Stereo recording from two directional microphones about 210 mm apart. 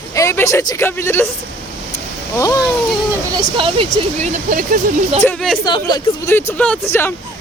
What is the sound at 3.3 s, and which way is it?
Speech, 25° right (ahead or behind).